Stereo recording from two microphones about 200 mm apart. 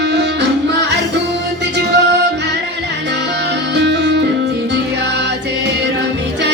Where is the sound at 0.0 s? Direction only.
60° right (ahead or behind).